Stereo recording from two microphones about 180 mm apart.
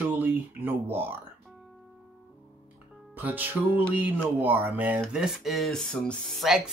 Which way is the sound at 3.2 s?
10° right (ahead or behind).